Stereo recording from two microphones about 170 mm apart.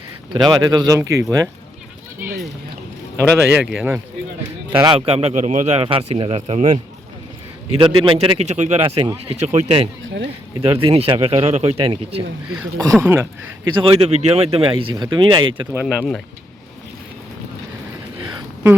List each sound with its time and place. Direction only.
0.3 s speech: 25° right (ahead or behind)
3.2 s speech: 5° right (ahead or behind)
4.7 s a man's voice: 30° right (ahead or behind)
7.8 s a man's voice: 30° right (ahead or behind)
12.8 s speech: 15° right (ahead or behind)
13.7 s a man's voice: 35° right (ahead or behind)
15.7 s speech: 5° right (ahead or behind)
18.2 s a sound: 25° right (ahead or behind)